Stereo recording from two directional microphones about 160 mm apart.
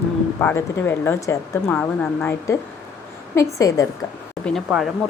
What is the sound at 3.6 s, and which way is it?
Speech, 20° left (ahead or behind).